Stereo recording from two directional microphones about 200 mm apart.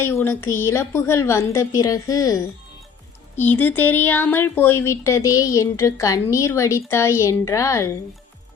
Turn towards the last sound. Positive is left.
turn(degrees=15)  # may be behind; listen again after turning